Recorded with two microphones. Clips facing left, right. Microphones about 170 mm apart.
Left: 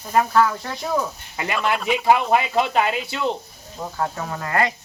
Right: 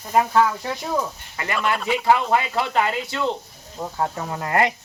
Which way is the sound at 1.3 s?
20° left (ahead or behind).